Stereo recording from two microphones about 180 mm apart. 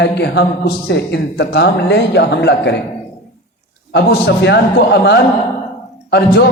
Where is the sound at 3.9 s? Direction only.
70° left (ahead or behind).